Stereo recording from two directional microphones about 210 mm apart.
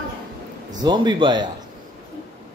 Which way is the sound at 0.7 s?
20° right (ahead or behind).